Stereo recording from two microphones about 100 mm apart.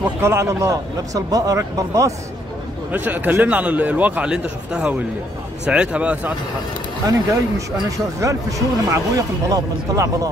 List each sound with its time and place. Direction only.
0.2 s a man's voice: 25° right (ahead or behind)
2.9 s a man's voice: 15° right (ahead or behind)
7.1 s a man's voice: 35° right (ahead or behind)